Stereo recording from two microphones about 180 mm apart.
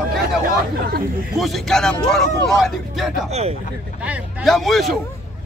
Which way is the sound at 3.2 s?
35° right (ahead or behind).